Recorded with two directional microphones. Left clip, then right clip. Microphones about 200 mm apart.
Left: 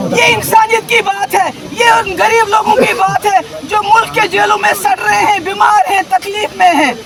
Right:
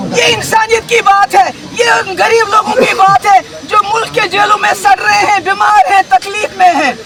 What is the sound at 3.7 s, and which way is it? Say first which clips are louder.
Speech: left 1 dB; 5° left (ahead or behind).